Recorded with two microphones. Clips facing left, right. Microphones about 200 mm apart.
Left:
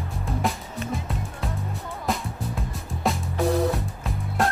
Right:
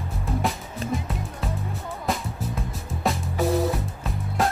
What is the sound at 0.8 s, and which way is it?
Music, 35° right (ahead or behind).